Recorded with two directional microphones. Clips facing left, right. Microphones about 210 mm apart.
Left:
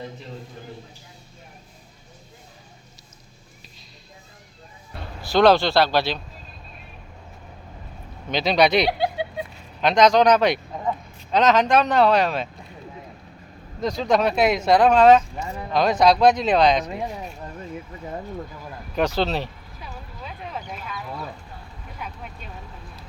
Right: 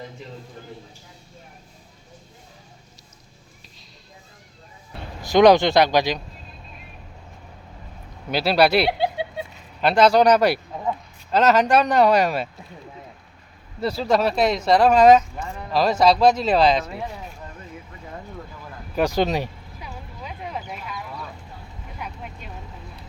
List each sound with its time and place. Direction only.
5.2 s speech: 15° right (ahead or behind)
8.3 s a man's voice: 5° right (ahead or behind)
13.8 s speech: 5° right (ahead or behind)
14.9 s speech: 10° right (ahead or behind)
16.8 s speech: 15° left (ahead or behind)
18.9 s a sound: 10° right (ahead or behind)